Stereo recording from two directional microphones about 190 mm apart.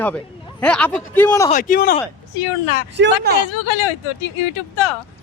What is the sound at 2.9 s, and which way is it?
Speech, 65° right (ahead or behind).